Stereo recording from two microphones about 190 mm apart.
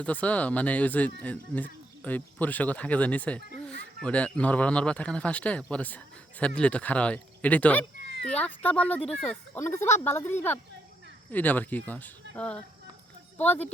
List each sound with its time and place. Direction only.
0.0 s speech: 5° left (ahead or behind)